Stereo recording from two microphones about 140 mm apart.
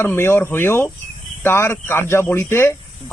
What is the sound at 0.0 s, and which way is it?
Speech, 15° left (ahead or behind).